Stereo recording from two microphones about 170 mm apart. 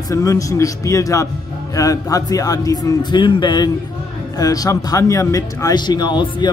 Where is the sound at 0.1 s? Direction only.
20° left (ahead or behind).